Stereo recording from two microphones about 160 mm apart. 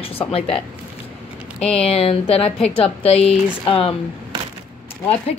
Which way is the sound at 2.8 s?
40° left (ahead or behind).